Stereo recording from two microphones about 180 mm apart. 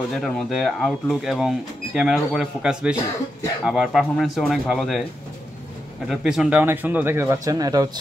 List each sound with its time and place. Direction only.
0.2 s speech: centre (ahead or behind)
6.0 s speech: 5° right (ahead or behind); by 8.0 s 20° right (ahead or behind)